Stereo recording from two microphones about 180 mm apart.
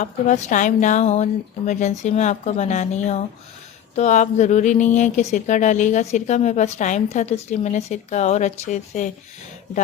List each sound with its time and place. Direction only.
0.0 s speech: 40° left (ahead or behind)